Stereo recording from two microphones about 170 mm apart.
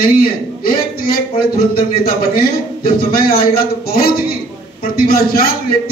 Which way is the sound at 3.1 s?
60° left (ahead or behind).